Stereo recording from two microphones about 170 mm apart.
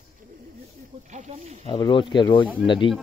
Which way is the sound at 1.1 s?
40° right (ahead or behind).